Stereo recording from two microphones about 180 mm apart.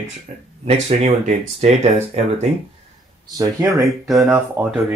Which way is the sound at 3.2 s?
20° right (ahead or behind).